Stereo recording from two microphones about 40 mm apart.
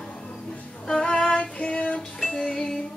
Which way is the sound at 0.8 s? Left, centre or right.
Centre.